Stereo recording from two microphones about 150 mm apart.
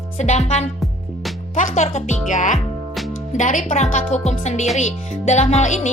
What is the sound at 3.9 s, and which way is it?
Speech, 50° left (ahead or behind).